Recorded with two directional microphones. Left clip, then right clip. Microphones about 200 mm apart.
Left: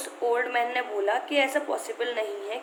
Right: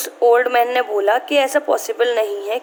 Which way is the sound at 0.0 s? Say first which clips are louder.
Right 12 dB; 50° right (ahead or behind).